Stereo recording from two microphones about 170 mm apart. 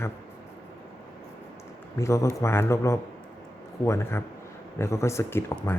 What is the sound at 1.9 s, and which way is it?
A man's voice, 15° left (ahead or behind).